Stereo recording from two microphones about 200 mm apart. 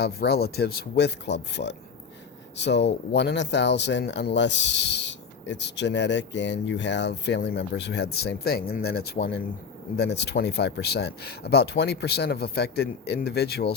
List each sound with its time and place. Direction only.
0.0 s speech: 55° left (ahead or behind)